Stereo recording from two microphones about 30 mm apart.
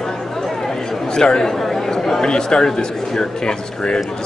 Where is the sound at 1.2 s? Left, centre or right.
Left.